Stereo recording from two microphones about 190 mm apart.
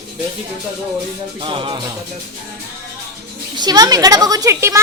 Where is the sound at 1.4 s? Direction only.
25° right (ahead or behind).